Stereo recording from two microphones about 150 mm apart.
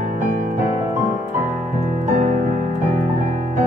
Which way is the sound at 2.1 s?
55° right (ahead or behind).